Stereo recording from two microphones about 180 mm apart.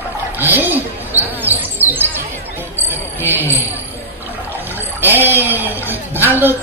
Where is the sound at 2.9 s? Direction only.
10° right (ahead or behind).